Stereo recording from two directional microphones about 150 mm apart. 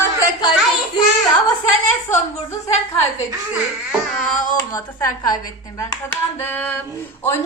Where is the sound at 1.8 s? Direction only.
50° left (ahead or behind).